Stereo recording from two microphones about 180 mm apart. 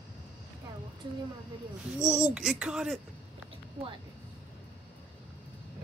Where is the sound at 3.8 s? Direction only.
35° right (ahead or behind).